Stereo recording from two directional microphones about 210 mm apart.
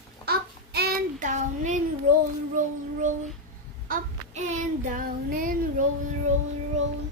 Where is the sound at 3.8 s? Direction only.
40° right (ahead or behind).